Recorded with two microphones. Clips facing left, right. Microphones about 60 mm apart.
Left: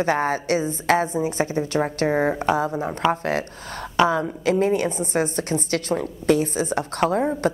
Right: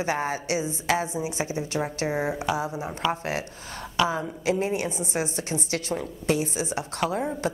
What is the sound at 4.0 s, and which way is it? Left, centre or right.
Speech, left.